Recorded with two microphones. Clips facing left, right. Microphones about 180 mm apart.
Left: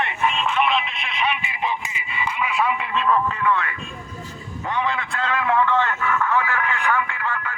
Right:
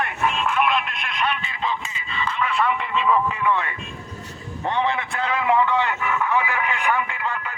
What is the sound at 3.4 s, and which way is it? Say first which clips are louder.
Speech: even; 20° right (ahead or behind).